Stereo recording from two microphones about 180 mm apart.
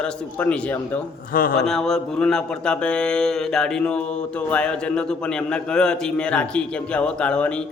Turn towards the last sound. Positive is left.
turn(degrees=5)  # may be behind; listen again after turning